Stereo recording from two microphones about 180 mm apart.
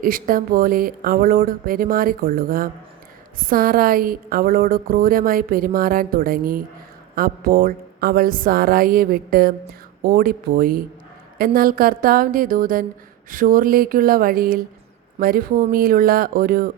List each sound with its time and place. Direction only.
0.0 s a woman's voice: 50° right (ahead or behind)